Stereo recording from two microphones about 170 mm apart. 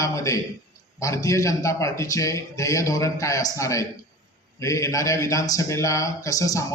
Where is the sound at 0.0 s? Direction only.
20° left (ahead or behind).